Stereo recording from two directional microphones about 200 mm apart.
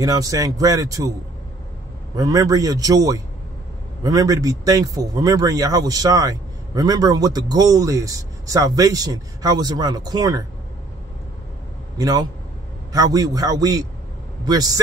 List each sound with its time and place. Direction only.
0.0 s speech: 15° right (ahead or behind)
2.1 s speech: 15° right (ahead or behind)
12.0 s a man's voice: 20° right (ahead or behind)